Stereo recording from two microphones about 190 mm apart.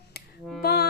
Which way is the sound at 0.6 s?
55° left (ahead or behind).